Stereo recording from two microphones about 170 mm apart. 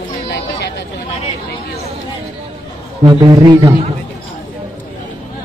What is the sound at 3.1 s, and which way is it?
Speech, 25° right (ahead or behind).